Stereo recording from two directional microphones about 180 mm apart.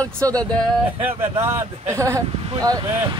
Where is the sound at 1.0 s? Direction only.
15° right (ahead or behind).